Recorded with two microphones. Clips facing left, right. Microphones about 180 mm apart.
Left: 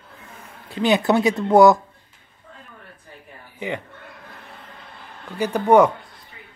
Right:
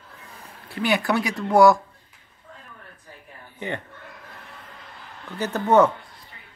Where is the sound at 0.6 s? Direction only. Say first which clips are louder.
Left 5 dB; 20° left (ahead or behind).